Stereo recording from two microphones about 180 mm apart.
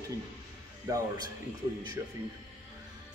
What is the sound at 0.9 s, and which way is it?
Speech, 20° right (ahead or behind).